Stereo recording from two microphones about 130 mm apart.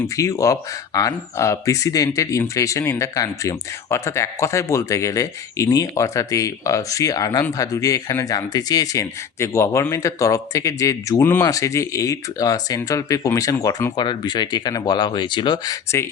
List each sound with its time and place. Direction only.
0.2 s speech: 25° left (ahead or behind)